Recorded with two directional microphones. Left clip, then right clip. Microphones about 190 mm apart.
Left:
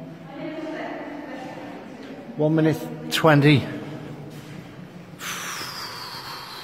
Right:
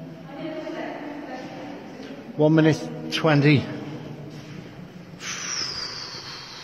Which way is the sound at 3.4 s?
15° left (ahead or behind).